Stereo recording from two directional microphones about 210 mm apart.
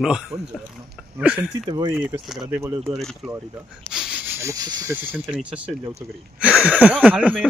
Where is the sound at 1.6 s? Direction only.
20° right (ahead or behind).